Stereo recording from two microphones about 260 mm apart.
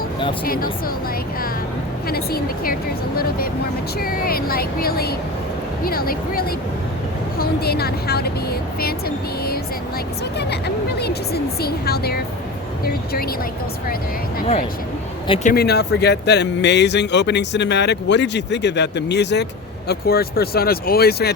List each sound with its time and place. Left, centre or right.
0.4 s speech: left
2.0 s speech: left
15.5 s speech: left